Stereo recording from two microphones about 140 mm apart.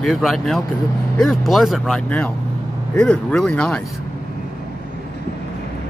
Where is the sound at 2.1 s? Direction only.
10° left (ahead or behind).